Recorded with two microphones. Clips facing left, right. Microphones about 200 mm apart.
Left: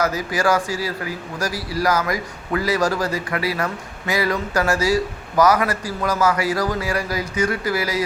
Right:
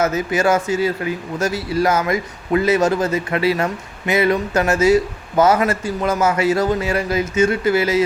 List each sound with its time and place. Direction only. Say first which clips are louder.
0.0 s a man's voice: right 3 dB; 25° right (ahead or behind)